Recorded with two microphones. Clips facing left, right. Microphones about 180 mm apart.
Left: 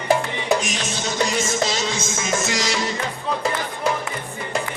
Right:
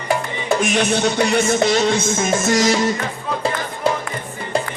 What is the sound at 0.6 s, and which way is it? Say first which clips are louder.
Music: right 10 dB; 60° right (ahead or behind).